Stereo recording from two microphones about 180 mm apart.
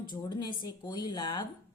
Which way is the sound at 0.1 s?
25° left (ahead or behind).